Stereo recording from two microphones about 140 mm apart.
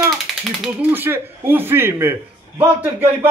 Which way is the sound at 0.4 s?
5° right (ahead or behind).